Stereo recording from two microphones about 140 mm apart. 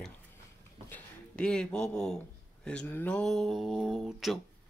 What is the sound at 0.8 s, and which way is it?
Speech, 10° left (ahead or behind).